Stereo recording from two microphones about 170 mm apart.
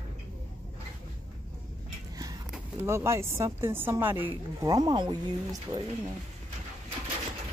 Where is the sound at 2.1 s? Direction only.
20° right (ahead or behind).